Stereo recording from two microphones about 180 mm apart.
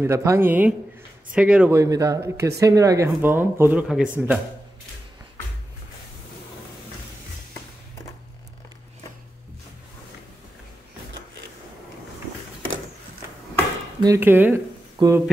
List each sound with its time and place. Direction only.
0.0 s speech: 15° right (ahead or behind)
1.8 s a man's voice: 20° right (ahead or behind)
14.0 s speech: 15° right (ahead or behind)